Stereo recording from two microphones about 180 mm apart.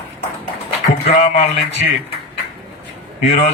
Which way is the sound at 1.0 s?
35° left (ahead or behind).